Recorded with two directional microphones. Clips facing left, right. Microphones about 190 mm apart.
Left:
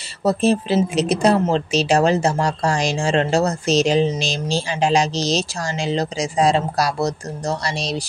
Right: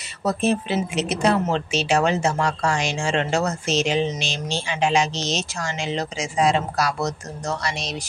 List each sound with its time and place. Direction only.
0.2 s speech: 30° left (ahead or behind)